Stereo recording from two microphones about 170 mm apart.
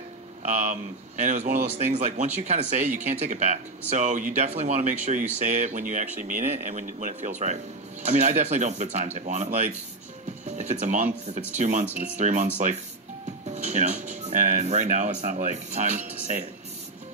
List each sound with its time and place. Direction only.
1.2 s speech: 45° right (ahead or behind)
13.5 s speech: 40° right (ahead or behind)